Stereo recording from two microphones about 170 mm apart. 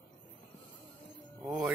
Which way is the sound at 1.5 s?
5° right (ahead or behind).